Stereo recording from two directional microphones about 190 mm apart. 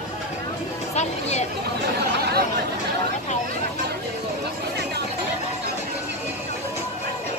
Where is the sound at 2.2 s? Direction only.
55° right (ahead or behind).